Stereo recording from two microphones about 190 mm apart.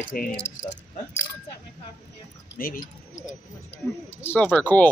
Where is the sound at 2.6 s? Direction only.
50° left (ahead or behind).